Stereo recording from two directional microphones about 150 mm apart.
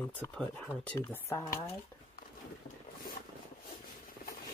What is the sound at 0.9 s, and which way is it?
Speech, 20° left (ahead or behind).